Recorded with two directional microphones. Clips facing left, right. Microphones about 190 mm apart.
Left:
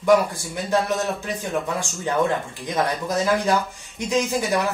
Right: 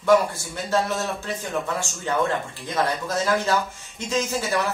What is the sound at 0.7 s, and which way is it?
Speech, 15° left (ahead or behind).